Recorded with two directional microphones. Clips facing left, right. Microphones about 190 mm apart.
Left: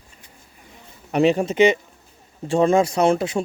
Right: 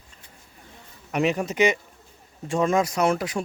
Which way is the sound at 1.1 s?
30° left (ahead or behind).